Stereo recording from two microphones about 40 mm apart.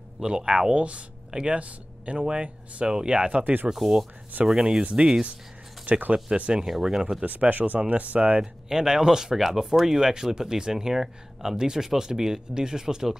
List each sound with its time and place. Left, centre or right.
0.5 s speech: right
2.4 s speech: right
2.9 s speech: right
3.7 s speech: centre
5.9 s speech: right
6.5 s speech: centre
7.2 s speech: right
8.4 s speech: centre